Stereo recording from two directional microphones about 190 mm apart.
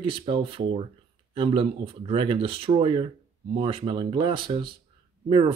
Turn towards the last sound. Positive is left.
turn(degrees=-25)  # may be behind; listen again after turning